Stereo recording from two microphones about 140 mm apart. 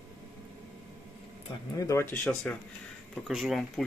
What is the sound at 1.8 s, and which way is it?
Speech, 20° left (ahead or behind).